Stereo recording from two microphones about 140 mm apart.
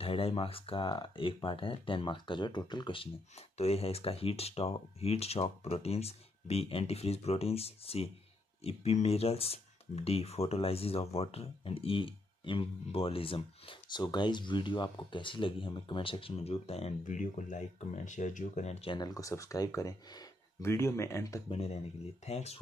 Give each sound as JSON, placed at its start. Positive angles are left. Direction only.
{"t": 0.0, "sound": "speech", "side_deg": 40}
{"t": 17.0, "sound": "speech", "side_deg": 65}
{"t": 18.9, "sound": "speech", "side_deg": 25}
{"t": 21.5, "sound": "speech", "side_deg": 45}